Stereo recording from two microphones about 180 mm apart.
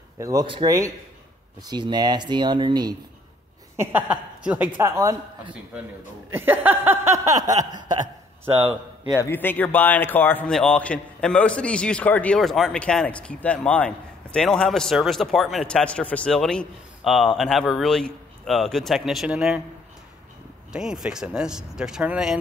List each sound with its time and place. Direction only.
0.2 s speech: 20° right (ahead or behind)
3.7 s a man's voice: 10° right (ahead or behind)
9.1 s a man's voice: 10° left (ahead or behind); by 19.6 s 5° right (ahead or behind)
20.7 s a man's voice: 5° right (ahead or behind)